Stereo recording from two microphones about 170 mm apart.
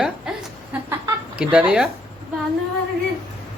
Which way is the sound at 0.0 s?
5° right (ahead or behind).